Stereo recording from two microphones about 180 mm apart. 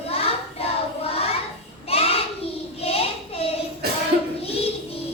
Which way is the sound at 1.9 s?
35° left (ahead or behind).